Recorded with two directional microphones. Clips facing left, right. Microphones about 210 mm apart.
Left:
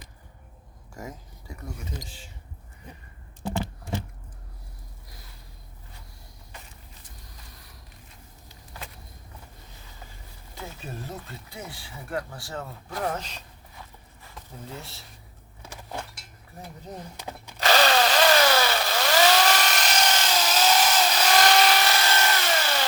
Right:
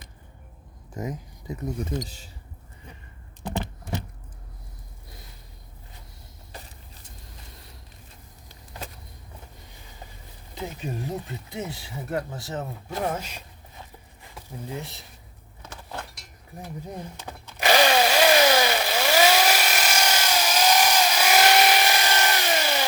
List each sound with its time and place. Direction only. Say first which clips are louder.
0.9 s speech: right 7 dB; 20° right (ahead or behind)
1.8 s speech: right 9 dB; 50° right (ahead or behind)
3.5 s typing: even; 20° right (ahead or behind)
10.5 s speech: right 6 dB; 15° right (ahead or behind)
13.0 s speech: right 1 dB; 10° right (ahead or behind)
14.2 s a sound: right 4 dB; 15° right (ahead or behind)
15.6 s vehicle: left 1 dB; 10° left (ahead or behind)
16.6 s speech: right 3 dB; 10° right (ahead or behind)
17.6 s power tool: right 2 dB; 15° right (ahead or behind)